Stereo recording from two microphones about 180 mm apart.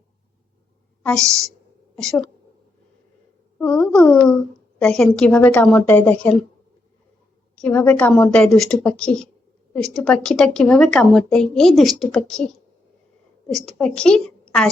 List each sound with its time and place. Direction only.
1.2 s a woman's voice: 15° right (ahead or behind)
2.0 s a woman's voice: 5° left (ahead or behind)
3.6 s a sound: 5° left (ahead or behind)
4.8 s a woman's voice: 5° left (ahead or behind)
7.5 s a woman's voice: 10° left (ahead or behind)
13.5 s a woman's voice: centre (ahead or behind)